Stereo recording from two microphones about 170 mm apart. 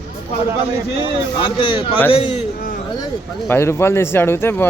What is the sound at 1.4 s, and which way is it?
Speech, 30° left (ahead or behind).